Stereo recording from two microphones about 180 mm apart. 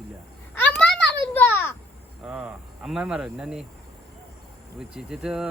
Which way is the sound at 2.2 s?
5° right (ahead or behind).